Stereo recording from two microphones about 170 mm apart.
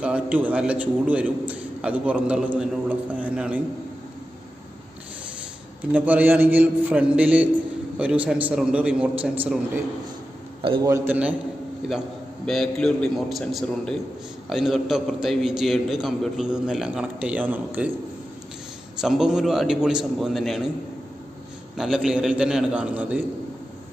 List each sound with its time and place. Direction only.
0.0 s a man's voice: 10° right (ahead or behind)
5.9 s a man's voice: 10° right (ahead or behind)
10.6 s a man's voice: 30° right (ahead or behind)
10.9 s a man's voice: 10° right (ahead or behind)
12.4 s a man's voice: centre (ahead or behind)
18.9 s a man's voice: 5° right (ahead or behind)
21.7 s a man's voice: centre (ahead or behind)